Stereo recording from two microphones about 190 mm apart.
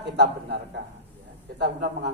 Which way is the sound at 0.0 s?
60° right (ahead or behind).